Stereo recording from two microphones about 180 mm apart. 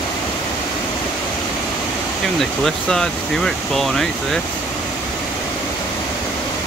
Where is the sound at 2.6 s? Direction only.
5° left (ahead or behind).